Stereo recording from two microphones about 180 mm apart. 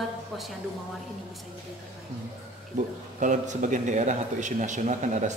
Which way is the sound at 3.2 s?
45° right (ahead or behind).